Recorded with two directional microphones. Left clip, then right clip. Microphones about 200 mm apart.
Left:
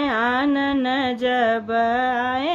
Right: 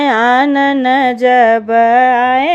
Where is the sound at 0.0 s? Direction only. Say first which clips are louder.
Right 10 dB; 35° right (ahead or behind).